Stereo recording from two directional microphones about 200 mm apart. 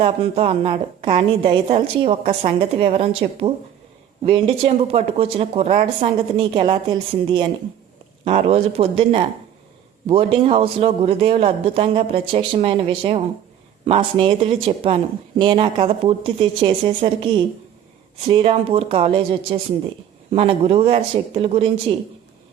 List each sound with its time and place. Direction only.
0.0 s speech: 30° right (ahead or behind)